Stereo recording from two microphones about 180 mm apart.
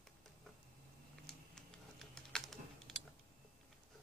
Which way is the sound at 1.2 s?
5° left (ahead or behind).